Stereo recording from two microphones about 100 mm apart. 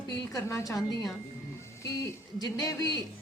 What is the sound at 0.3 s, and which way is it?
Speech, 30° left (ahead or behind).